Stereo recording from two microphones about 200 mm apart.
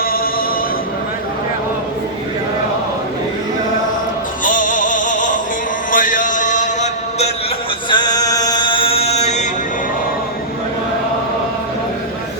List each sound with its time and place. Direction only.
4.4 s music: 40° left (ahead or behind)
7.9 s chant: 20° left (ahead or behind)